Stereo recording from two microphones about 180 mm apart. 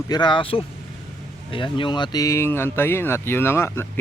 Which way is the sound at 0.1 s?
25° left (ahead or behind).